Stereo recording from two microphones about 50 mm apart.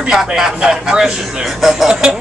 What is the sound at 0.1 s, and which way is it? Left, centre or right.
A man's voice, centre.